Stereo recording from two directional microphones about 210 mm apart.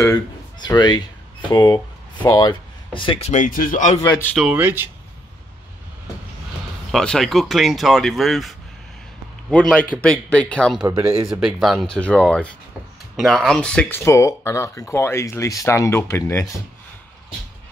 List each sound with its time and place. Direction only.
0.0 s speech: 20° left (ahead or behind); by 4.0 s 35° left (ahead or behind)
4.0 s speech: 15° left (ahead or behind)
4.3 s speech: centre (ahead or behind)
6.9 s speech: centre (ahead or behind)
10.9 s speech: 15° right (ahead or behind)
11.2 s speech: centre (ahead or behind)